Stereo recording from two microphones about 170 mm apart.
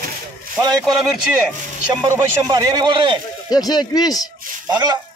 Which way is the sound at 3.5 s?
25° left (ahead or behind).